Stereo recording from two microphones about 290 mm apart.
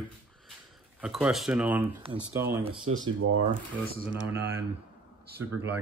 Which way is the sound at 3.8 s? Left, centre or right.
Right.